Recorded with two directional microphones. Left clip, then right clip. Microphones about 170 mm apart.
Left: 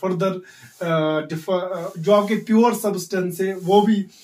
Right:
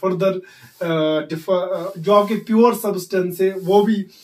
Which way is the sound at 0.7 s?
20° left (ahead or behind).